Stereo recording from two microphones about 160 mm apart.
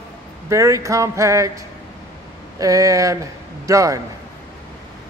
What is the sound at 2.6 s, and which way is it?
A man's voice, 20° right (ahead or behind).